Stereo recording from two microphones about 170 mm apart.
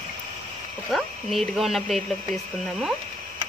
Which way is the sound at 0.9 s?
Centre (ahead or behind).